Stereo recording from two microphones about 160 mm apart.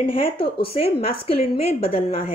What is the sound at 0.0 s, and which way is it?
A woman's voice, 35° left (ahead or behind).